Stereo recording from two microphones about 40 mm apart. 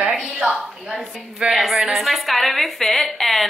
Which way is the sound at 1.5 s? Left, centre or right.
Centre.